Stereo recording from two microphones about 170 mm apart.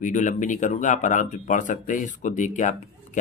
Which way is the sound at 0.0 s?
45° left (ahead or behind).